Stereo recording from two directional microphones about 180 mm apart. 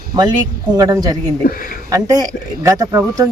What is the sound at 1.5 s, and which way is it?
Speech, 50° left (ahead or behind).